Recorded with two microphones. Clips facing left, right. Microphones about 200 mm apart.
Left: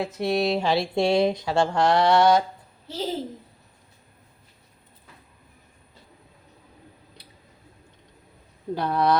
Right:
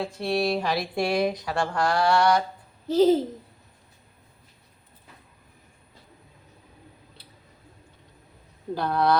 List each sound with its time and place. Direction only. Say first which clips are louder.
0.0 s speech: left 2 dB; 20° left (ahead or behind)
2.9 s a child's voice: right 12 dB; 40° right (ahead or behind)
8.8 s speech: left 1 dB; 20° left (ahead or behind)